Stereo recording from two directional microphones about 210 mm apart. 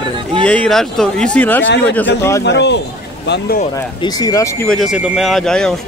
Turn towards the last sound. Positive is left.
turn(degrees=5)  # may be behind; listen again after turning